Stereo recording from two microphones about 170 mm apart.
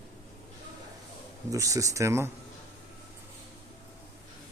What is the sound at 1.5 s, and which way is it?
Speech, 20° right (ahead or behind).